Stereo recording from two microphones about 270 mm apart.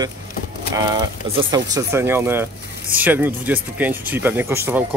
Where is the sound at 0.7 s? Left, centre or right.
Centre.